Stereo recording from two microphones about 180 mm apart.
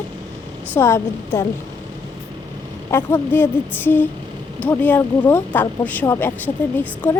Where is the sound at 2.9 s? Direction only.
15° left (ahead or behind).